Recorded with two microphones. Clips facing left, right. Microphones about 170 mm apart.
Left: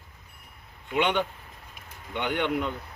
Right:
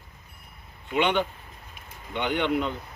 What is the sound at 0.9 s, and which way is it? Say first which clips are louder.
Speech: right 1 dB; 10° left (ahead or behind).